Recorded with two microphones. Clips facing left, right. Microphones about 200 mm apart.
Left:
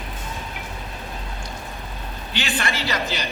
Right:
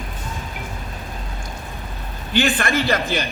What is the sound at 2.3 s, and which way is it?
Speech, 50° right (ahead or behind).